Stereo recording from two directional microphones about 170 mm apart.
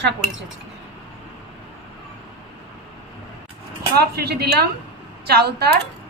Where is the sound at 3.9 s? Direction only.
70° right (ahead or behind).